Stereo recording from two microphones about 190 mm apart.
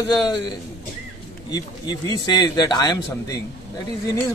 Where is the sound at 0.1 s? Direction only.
20° left (ahead or behind).